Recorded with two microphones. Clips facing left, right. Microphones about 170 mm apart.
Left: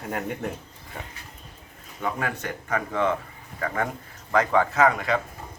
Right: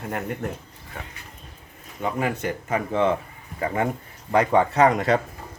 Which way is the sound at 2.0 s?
15° right (ahead or behind).